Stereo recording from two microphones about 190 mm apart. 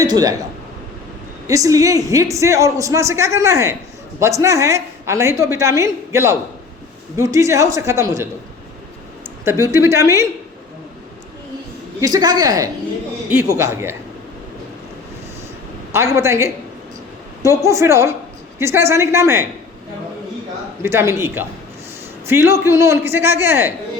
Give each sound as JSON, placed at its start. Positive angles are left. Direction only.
{"t": 0.0, "sound": "a man's voice", "side_deg": -20}
{"t": 1.5, "sound": "a woman's voice", "side_deg": -15}
{"t": 11.9, "sound": "a woman's voice", "side_deg": -20}
{"t": 16.1, "sound": "a woman's voice", "side_deg": -15}
{"t": 20.8, "sound": "a woman's voice", "side_deg": -15}